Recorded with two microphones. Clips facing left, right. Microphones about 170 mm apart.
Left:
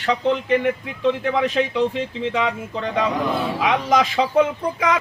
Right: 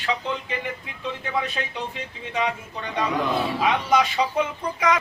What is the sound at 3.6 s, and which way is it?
Speech, 90° left.